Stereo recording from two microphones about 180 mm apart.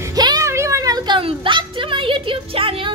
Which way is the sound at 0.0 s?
20° right (ahead or behind).